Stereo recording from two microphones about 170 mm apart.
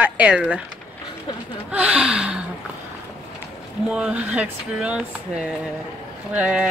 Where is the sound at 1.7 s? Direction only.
5° right (ahead or behind).